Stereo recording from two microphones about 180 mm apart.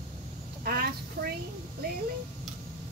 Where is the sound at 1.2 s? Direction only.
55° right (ahead or behind).